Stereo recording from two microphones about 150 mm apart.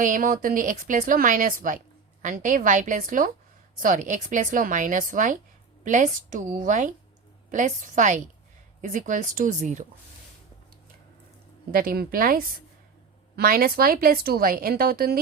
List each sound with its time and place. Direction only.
0.0 s speech: 60° right (ahead or behind)
11.7 s speech: 75° right (ahead or behind)